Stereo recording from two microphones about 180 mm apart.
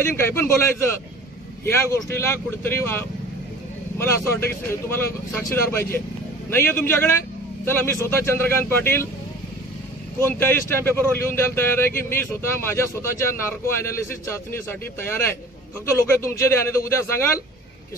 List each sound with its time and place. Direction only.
0.0 s speech: 15° left (ahead or behind)
10.2 s speech: 15° left (ahead or behind)